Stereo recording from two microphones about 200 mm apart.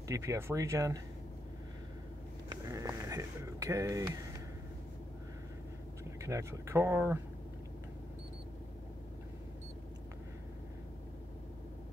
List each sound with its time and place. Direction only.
0.1 s speech: 15° right (ahead or behind)
2.5 s speech: 15° right (ahead or behind)
6.2 s speech: 15° right (ahead or behind)